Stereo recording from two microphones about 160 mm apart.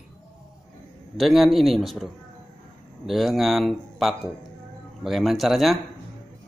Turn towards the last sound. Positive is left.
turn(degrees=0)  # may be behind; listen again after turning